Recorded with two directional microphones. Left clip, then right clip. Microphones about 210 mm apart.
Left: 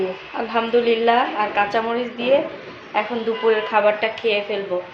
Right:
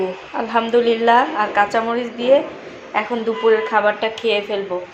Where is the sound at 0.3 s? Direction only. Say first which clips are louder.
Right 3 dB; 15° right (ahead or behind).